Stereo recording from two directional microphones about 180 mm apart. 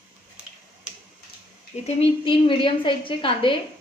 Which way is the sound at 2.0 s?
30° left (ahead or behind).